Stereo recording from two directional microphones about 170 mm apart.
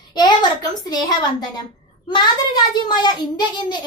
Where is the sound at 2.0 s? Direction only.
25° left (ahead or behind).